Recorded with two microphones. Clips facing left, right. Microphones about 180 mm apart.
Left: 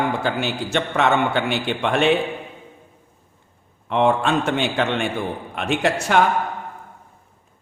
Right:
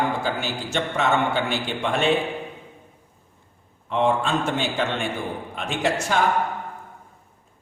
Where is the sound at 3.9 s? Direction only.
65° left (ahead or behind).